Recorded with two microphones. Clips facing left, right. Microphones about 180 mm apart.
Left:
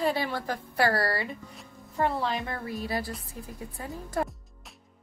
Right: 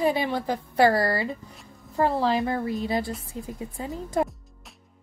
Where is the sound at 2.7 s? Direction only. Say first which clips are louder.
Right 5 dB; 20° right (ahead or behind).